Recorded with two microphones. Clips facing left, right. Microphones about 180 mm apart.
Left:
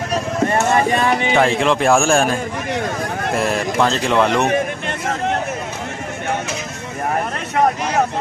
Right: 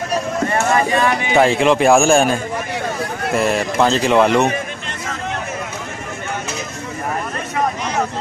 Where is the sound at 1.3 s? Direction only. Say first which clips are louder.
Right 5 dB; 5° right (ahead or behind).